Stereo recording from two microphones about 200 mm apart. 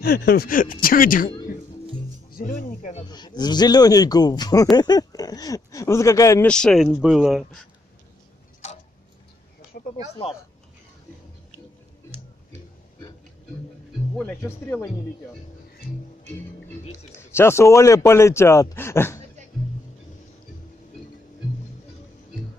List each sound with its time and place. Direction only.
0.0 s speech: 50° left (ahead or behind)
2.3 s speech: 45° left (ahead or behind)
3.1 s a man's voice: 20° left (ahead or behind)
6.5 s speech: 5° left (ahead or behind)
14.1 s a man's voice: 10° left (ahead or behind)
17.2 s a man's voice: 10° left (ahead or behind)